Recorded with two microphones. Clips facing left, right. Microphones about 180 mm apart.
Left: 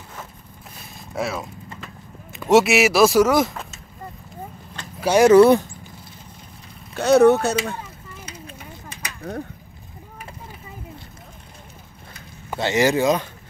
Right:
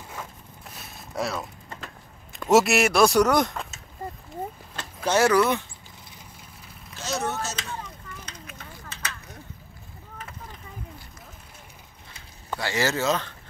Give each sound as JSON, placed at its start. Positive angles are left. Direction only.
{"t": 0.7, "sound": "a sound", "side_deg": 0}
{"t": 2.3, "sound": "speech", "side_deg": 0}
{"t": 5.0, "sound": "speech", "side_deg": 15}
{"t": 5.3, "sound": "speech", "side_deg": 35}
{"t": 6.9, "sound": "speech", "side_deg": 60}
{"t": 7.8, "sound": "a sound", "side_deg": 10}
{"t": 12.5, "sound": "speech", "side_deg": 20}